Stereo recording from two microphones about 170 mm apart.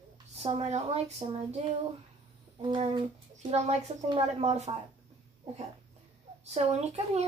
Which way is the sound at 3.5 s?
40° right (ahead or behind).